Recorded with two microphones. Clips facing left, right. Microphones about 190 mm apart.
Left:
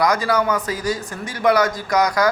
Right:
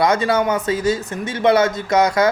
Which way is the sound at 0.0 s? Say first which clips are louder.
Right 2 dB; 25° right (ahead or behind).